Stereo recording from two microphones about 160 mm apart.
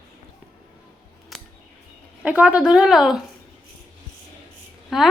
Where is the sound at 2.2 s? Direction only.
10° right (ahead or behind).